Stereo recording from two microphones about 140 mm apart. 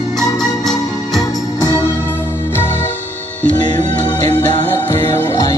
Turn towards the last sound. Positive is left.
turn(degrees=15)  # may be behind; listen again after turning